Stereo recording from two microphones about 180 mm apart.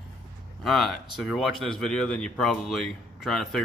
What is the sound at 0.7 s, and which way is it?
Speech, centre (ahead or behind).